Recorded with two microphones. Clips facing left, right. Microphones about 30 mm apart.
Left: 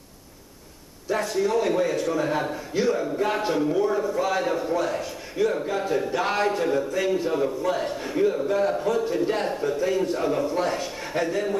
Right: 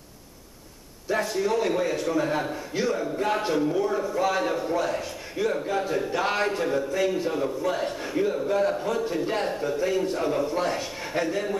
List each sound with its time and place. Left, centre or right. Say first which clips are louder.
1.0 s a man's voice: left 1 dB; centre